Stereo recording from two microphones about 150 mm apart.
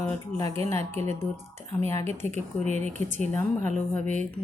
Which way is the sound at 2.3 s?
50° right (ahead or behind).